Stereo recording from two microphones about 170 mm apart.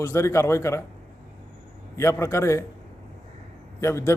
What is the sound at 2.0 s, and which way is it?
Speech, 15° left (ahead or behind).